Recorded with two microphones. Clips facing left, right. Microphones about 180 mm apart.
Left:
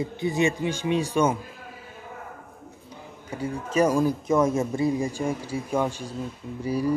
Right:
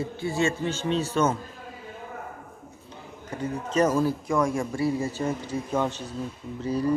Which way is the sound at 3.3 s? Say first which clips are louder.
Even; 10° left (ahead or behind).